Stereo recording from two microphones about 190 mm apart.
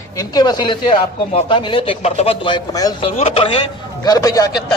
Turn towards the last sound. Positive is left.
turn(degrees=20)  # may be behind; listen again after turning